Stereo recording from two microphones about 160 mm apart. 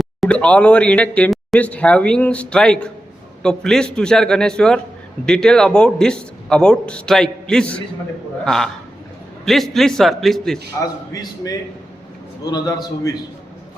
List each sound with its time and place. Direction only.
0.0 s a man's voice: 5° left (ahead or behind)
10.8 s speech: 20° left (ahead or behind)